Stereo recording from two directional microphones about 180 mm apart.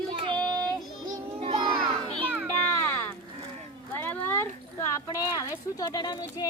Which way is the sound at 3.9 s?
10° left (ahead or behind).